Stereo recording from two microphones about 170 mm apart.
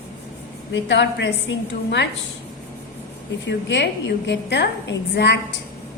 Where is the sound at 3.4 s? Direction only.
90° left.